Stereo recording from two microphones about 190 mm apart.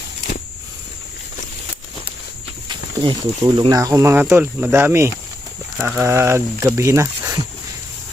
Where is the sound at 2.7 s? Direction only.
25° right (ahead or behind).